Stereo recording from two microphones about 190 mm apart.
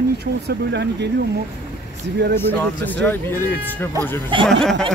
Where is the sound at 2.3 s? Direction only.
10° left (ahead or behind).